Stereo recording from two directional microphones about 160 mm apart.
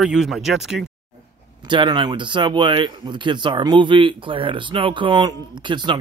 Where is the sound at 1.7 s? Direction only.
30° right (ahead or behind).